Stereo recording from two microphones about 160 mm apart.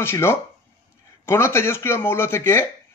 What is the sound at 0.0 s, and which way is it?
Speech, 15° left (ahead or behind).